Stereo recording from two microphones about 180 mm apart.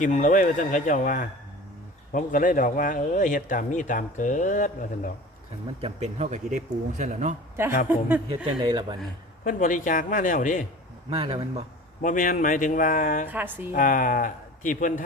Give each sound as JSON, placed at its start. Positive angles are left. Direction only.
{"t": 0.0, "sound": "speech", "side_deg": 45}
{"t": 5.8, "sound": "speech", "side_deg": -40}
{"t": 7.9, "sound": "speech", "side_deg": -10}
{"t": 8.6, "sound": "speech", "side_deg": -25}
{"t": 9.4, "sound": "speech", "side_deg": 50}
{"t": 11.1, "sound": "speech", "side_deg": -35}
{"t": 12.0, "sound": "speech", "side_deg": 50}
{"t": 13.2, "sound": "speech", "side_deg": -10}
{"t": 13.7, "sound": "speech", "side_deg": 50}